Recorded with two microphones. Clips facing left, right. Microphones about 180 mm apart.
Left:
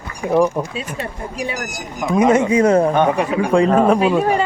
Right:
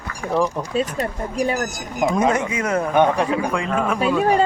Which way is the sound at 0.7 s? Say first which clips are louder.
Right 5 dB; 40° right (ahead or behind).